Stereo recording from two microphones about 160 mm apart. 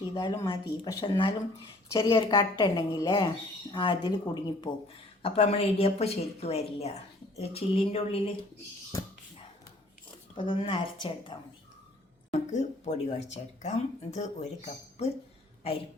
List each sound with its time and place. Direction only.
0.1 s speech: 25° left (ahead or behind)
5.2 s a woman's voice: 35° left (ahead or behind)
10.3 s a woman's voice: 30° left (ahead or behind)
12.3 s speech: 45° left (ahead or behind)